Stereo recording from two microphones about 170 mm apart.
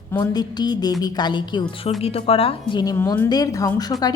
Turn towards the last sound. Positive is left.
turn(degrees=25)  # may be behind; listen again after turning